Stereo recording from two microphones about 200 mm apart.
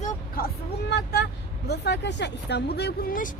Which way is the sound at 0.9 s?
55° left (ahead or behind).